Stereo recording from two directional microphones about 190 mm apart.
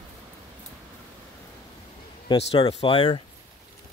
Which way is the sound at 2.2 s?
30° left (ahead or behind).